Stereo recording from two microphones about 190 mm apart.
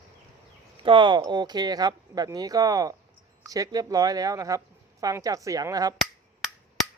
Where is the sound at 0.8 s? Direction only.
25° right (ahead or behind).